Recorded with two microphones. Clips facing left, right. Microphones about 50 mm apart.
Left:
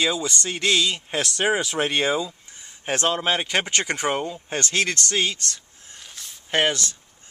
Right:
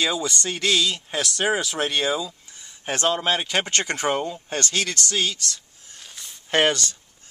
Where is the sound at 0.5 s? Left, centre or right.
Centre.